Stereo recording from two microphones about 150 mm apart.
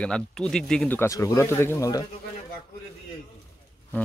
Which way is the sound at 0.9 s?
20° left (ahead or behind).